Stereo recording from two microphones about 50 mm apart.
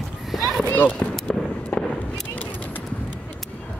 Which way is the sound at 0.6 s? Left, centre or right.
Left.